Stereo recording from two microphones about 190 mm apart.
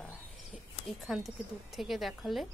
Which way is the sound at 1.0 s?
Centre (ahead or behind).